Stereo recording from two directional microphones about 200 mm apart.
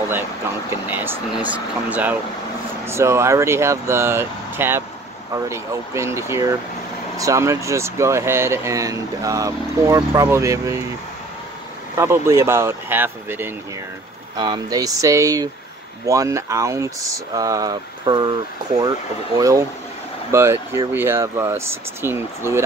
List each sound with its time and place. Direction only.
0.8 s speech: 10° right (ahead or behind)
12.0 s speech: 15° right (ahead or behind)